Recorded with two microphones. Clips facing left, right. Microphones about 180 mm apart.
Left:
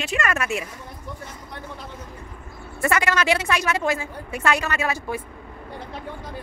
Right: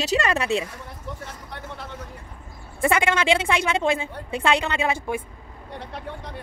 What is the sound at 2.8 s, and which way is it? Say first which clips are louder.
Speech: right 1 dB; 25° right (ahead or behind).